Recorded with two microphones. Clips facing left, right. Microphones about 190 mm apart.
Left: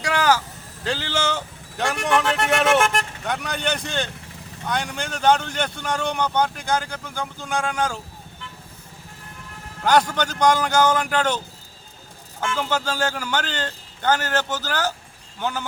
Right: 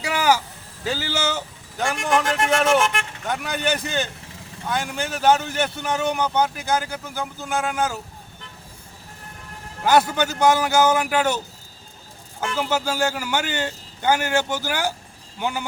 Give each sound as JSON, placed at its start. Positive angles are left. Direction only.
{"t": 0.0, "sound": "vehicle", "side_deg": -10}
{"t": 0.9, "sound": "a man's voice", "side_deg": -10}
{"t": 2.8, "sound": "speech", "side_deg": 40}
{"t": 3.2, "sound": "speech", "side_deg": -5}
{"t": 9.8, "sound": "a man's voice", "side_deg": -5}
{"t": 12.5, "sound": "a man's voice", "side_deg": -10}